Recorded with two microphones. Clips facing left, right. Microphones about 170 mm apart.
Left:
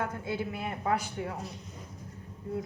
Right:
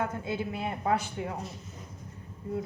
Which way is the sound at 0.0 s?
20° right (ahead or behind).